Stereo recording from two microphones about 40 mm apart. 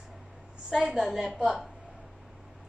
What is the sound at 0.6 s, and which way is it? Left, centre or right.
Speech, centre.